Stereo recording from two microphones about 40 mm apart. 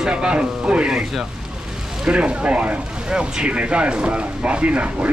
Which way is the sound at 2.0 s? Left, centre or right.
Right.